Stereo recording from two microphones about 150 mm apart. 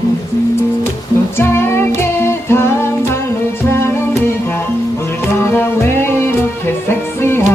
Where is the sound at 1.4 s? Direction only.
15° left (ahead or behind).